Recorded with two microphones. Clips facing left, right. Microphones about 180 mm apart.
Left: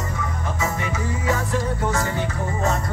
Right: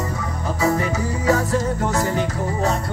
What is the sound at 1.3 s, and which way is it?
Music, 40° right (ahead or behind).